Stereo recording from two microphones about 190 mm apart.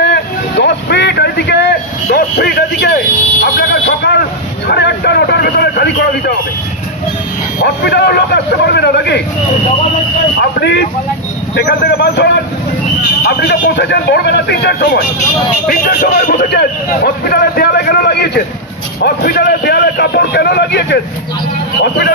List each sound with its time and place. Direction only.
0.0 s vehicle: 65° left (ahead or behind)
4.6 s a man's voice: 60° left (ahead or behind)
7.6 s a man's voice: 60° left (ahead or behind)
11.5 s a man's voice: 60° left (ahead or behind)
15.7 s a man's voice: 50° left (ahead or behind)